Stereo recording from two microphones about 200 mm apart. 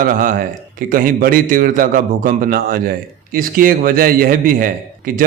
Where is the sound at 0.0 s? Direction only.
45° right (ahead or behind).